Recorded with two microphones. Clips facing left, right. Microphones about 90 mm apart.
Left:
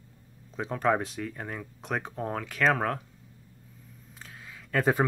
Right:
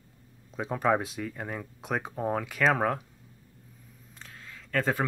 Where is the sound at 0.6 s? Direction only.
5° right (ahead or behind).